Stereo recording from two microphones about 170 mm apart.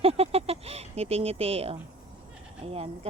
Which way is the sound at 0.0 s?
35° right (ahead or behind).